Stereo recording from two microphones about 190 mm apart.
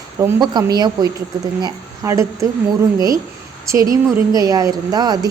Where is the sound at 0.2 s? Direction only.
20° right (ahead or behind).